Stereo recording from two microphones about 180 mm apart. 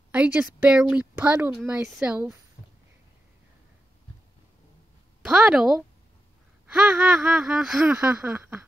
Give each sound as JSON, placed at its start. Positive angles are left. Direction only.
{"t": 0.1, "sound": "speech", "side_deg": -5}
{"t": 5.2, "sound": "a woman's voice", "side_deg": -5}
{"t": 8.4, "sound": "a sound", "side_deg": -15}